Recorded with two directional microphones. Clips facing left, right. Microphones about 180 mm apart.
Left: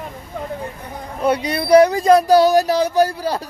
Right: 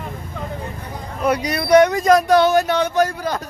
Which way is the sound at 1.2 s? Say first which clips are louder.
Left 1 dB; 30° left (ahead or behind).